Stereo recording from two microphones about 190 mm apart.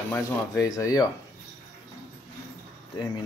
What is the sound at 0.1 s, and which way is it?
Speech, 15° left (ahead or behind).